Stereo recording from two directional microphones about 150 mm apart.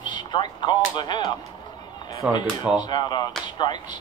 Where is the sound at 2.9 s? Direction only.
30° left (ahead or behind).